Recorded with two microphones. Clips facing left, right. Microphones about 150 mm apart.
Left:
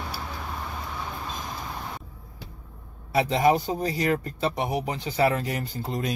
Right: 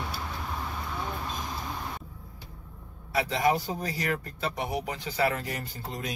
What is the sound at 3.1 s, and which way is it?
Speech, 25° left (ahead or behind).